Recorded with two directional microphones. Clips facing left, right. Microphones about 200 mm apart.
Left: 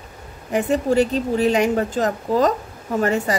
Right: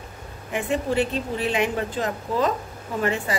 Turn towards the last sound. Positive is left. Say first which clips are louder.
# left 5 dB
turn(degrees=40)  # may be behind; listen again after turning